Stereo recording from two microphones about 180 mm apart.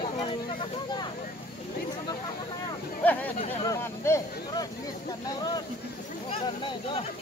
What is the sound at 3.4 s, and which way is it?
Speech, 25° left (ahead or behind).